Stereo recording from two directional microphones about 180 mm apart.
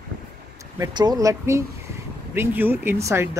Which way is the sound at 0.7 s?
20° right (ahead or behind).